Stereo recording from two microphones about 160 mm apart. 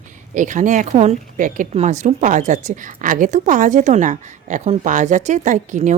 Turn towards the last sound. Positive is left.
turn(degrees=-50)  # may be behind; listen again after turning